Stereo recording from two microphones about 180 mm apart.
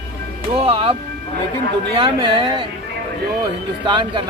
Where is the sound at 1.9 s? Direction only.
30° right (ahead or behind).